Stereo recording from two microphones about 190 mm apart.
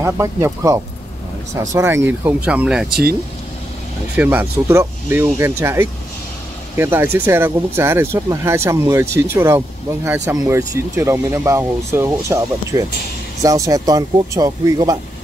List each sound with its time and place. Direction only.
0.0 s speech: 15° right (ahead or behind)
4.2 s speech: 10° right (ahead or behind)